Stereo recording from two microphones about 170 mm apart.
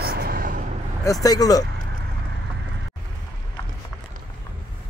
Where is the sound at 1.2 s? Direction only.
20° left (ahead or behind).